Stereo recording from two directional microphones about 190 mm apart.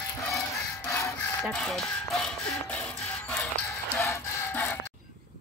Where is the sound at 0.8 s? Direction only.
15° left (ahead or behind).